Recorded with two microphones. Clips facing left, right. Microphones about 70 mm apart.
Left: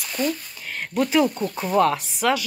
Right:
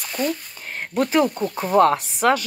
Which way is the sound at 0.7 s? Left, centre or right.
Right.